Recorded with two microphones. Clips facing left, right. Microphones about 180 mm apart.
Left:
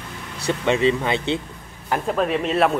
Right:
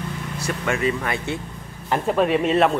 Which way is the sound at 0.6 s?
25° left (ahead or behind).